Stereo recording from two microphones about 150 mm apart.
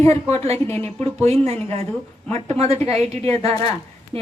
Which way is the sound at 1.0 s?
45° right (ahead or behind).